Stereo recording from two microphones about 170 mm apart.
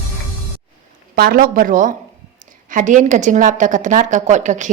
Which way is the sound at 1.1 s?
60° right (ahead or behind).